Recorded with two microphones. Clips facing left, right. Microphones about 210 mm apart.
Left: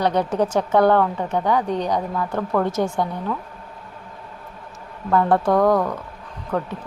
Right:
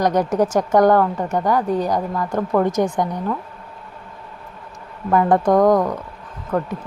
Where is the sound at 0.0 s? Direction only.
10° right (ahead or behind).